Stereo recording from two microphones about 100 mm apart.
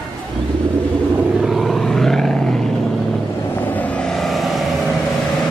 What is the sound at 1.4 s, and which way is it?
Vehicle, centre (ahead or behind).